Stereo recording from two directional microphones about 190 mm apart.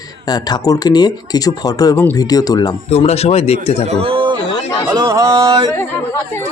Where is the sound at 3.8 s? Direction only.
30° right (ahead or behind).